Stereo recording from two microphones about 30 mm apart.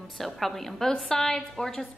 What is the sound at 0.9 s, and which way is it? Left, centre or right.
Speech, left.